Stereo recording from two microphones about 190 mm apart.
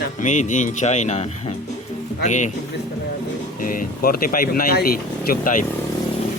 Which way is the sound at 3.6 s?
45° left (ahead or behind).